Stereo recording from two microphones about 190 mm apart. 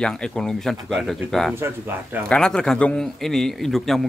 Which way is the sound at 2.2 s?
5° left (ahead or behind).